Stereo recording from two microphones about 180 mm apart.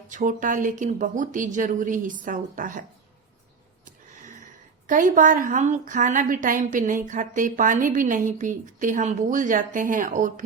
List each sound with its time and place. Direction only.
0.1 s a woman's voice: 45° right (ahead or behind)
3.8 s a sound: 45° right (ahead or behind)
4.9 s a woman's voice: 45° right (ahead or behind)